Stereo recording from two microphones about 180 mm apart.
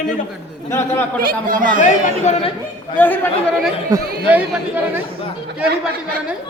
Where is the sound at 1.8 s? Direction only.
45° left (ahead or behind).